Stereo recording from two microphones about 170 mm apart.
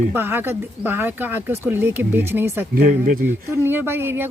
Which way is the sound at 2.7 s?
65° right (ahead or behind).